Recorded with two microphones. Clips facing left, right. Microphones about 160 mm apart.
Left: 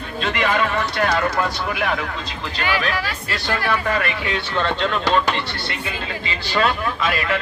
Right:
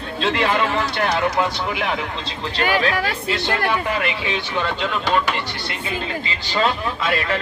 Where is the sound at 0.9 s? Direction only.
20° right (ahead or behind).